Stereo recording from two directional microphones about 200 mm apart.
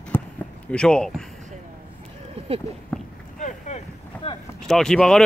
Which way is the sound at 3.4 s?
35° left (ahead or behind).